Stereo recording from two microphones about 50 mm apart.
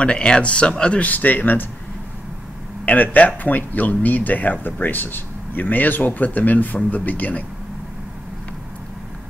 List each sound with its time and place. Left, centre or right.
0.0 s speech: centre; by 1.7 s left
2.8 s speech: left